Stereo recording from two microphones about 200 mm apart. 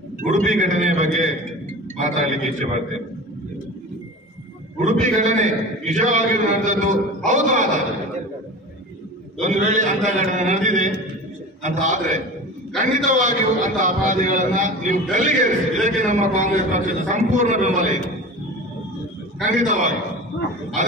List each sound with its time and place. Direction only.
0.2 s a sound: 40° right (ahead or behind)
2.0 s a man's voice: 35° right (ahead or behind)
4.7 s a man's voice: 35° right (ahead or behind)
9.4 s a man's voice: 35° right (ahead or behind)
19.4 s a man's voice: 40° right (ahead or behind)